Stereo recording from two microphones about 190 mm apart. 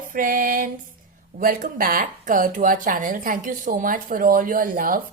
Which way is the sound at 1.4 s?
45° right (ahead or behind).